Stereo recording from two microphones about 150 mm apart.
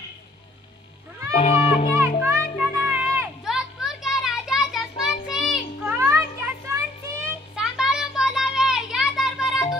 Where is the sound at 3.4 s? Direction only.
Centre (ahead or behind).